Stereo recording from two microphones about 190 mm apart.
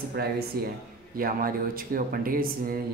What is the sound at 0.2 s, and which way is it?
Speech, 55° right (ahead or behind).